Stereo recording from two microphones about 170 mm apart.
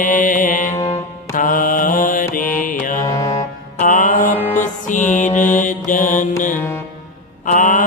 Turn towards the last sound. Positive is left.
turn(degrees=50)  # may be behind; listen again after turning